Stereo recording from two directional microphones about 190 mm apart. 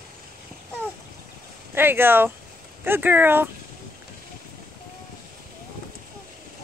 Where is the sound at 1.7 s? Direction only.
10° right (ahead or behind).